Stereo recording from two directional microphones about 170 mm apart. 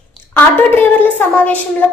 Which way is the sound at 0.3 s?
10° left (ahead or behind).